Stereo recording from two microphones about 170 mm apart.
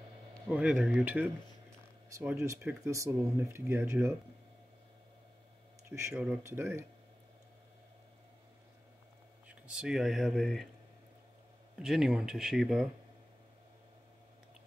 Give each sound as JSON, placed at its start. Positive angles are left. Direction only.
{"t": 0.5, "sound": "speech", "side_deg": -5}
{"t": 5.9, "sound": "speech", "side_deg": -15}
{"t": 9.5, "sound": "speech", "side_deg": -5}
{"t": 11.8, "sound": "speech", "side_deg": -5}